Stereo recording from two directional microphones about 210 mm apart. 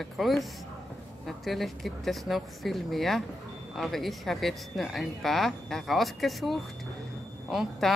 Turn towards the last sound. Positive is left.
turn(degrees=0)  # may be behind; listen again after turning